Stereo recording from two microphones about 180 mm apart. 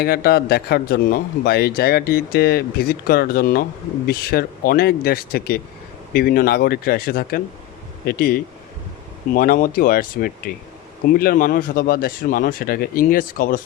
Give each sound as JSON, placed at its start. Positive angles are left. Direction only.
{"t": 0.0, "sound": "a man's voice", "side_deg": 55}